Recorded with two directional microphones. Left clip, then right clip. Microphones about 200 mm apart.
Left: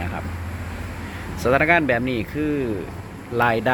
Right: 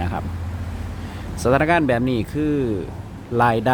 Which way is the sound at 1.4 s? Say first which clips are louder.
Even; 20° right (ahead or behind).